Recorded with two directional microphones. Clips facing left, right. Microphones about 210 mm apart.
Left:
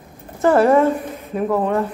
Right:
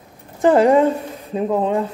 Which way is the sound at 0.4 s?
15° right (ahead or behind).